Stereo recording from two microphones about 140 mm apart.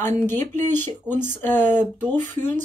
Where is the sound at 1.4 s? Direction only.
15° left (ahead or behind).